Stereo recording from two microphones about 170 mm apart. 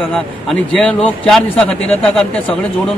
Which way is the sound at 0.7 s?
5° left (ahead or behind).